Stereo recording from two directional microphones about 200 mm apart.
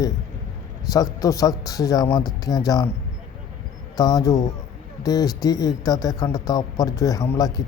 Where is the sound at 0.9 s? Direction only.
15° left (ahead or behind).